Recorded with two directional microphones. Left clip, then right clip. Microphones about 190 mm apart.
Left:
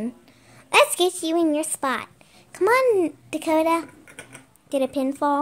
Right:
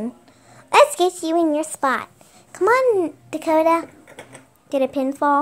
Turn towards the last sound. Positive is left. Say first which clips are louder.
# right 3 dB
turn(degrees=5)  # may be behind; listen again after turning